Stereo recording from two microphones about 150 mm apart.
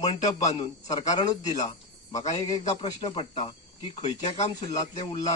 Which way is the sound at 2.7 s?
45° left (ahead or behind).